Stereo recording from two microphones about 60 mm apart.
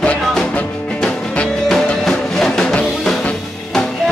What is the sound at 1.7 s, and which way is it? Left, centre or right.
Music, centre.